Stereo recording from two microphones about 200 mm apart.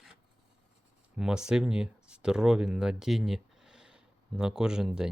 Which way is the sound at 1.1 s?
5° right (ahead or behind).